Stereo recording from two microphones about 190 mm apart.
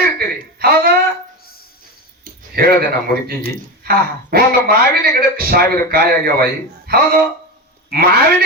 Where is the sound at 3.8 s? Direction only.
50° right (ahead or behind).